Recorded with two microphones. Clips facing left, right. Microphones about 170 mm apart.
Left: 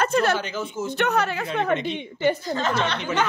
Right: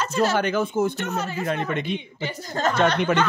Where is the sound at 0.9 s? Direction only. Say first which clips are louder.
Left 5 dB; 65° left (ahead or behind).